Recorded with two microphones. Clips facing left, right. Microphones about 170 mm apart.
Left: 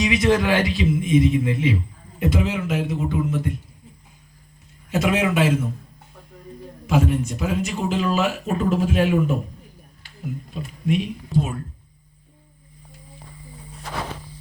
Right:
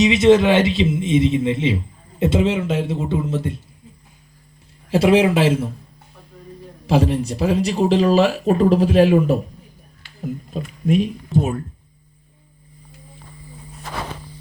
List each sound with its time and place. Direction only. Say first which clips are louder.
0.0 s speech: right 6 dB; 25° right (ahead or behind)
4.9 s speech: right 6 dB; 30° right (ahead or behind)
6.8 s speech: right 3 dB; 30° right (ahead or behind)
10.5 s speech: right 4 dB; 45° right (ahead or behind)